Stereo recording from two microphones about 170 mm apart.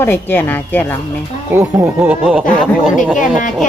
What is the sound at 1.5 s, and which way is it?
Speech, 15° right (ahead or behind).